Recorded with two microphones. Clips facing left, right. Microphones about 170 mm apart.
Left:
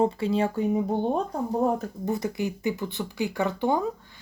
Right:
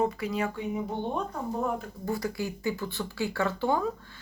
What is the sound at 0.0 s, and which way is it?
Speech, 30° left (ahead or behind).